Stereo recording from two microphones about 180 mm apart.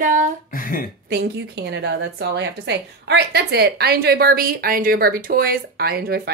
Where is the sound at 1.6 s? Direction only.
70° right (ahead or behind).